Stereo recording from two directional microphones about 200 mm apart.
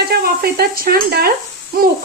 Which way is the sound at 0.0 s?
50° right (ahead or behind).